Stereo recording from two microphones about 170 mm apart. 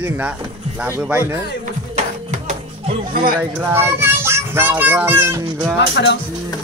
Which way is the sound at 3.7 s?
15° right (ahead or behind).